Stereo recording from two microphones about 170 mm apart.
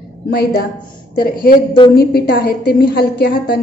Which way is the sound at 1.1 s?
60° left (ahead or behind).